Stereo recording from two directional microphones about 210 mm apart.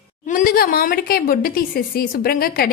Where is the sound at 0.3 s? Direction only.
40° left (ahead or behind).